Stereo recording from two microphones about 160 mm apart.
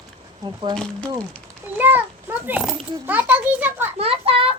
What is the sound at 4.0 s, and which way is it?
Speech, 35° right (ahead or behind).